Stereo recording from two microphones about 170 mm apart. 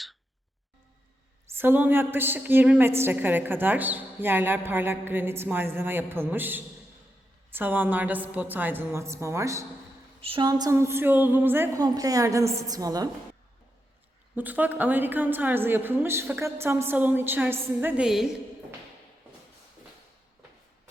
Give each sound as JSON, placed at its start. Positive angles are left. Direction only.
{"t": 1.5, "sound": "a woman's voice", "side_deg": -10}
{"t": 10.2, "sound": "a woman's voice", "side_deg": -35}
{"t": 14.3, "sound": "a woman's voice", "side_deg": -10}